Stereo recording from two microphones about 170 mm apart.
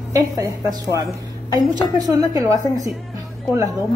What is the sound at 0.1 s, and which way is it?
A woman's voice, 20° right (ahead or behind).